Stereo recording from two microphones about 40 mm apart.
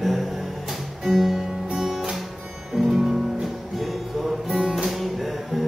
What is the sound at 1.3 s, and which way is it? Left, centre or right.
Music, centre.